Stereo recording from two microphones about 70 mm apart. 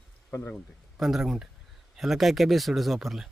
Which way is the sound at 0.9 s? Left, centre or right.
Centre.